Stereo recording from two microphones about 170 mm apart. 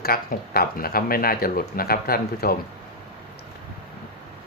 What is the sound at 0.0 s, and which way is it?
Speech, 60° left (ahead or behind).